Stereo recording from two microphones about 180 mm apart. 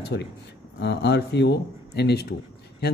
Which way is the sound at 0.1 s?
80° left.